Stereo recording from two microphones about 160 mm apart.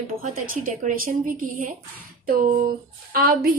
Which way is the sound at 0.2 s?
55° right (ahead or behind).